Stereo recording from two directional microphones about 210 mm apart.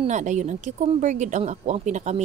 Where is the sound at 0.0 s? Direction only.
35° right (ahead or behind).